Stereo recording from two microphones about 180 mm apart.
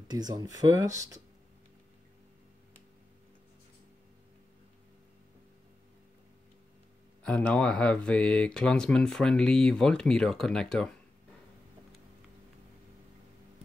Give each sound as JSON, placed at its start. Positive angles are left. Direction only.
{"t": 0.1, "sound": "speech", "side_deg": -20}
{"t": 7.2, "sound": "speech", "side_deg": 5}